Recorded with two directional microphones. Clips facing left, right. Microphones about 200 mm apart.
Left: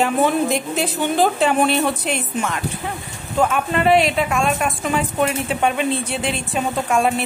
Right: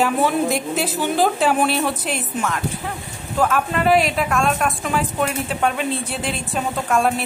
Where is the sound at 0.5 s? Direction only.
5° right (ahead or behind).